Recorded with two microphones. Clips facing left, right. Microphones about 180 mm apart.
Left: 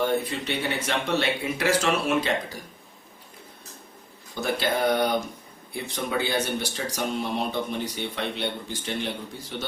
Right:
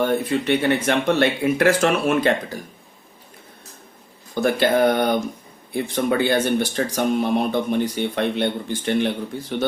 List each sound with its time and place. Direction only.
0.0 s speech: 55° right (ahead or behind)
4.4 s speech: 55° right (ahead or behind)